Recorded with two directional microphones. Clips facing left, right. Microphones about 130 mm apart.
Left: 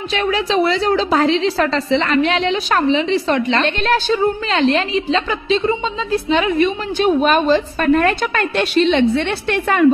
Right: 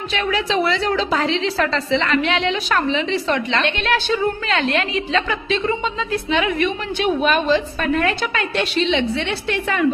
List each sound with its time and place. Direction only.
0.1 s a woman's voice: 35° left (ahead or behind)